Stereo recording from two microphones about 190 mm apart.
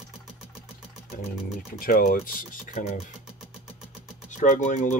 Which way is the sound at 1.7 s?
50° left (ahead or behind).